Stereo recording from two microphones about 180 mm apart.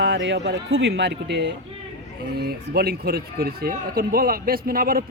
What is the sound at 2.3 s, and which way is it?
Speech, 60° right (ahead or behind).